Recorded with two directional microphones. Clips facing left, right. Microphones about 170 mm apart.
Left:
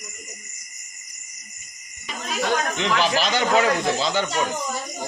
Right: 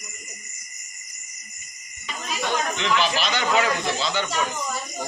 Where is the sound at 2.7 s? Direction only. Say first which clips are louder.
Left 2 dB; 40° left (ahead or behind).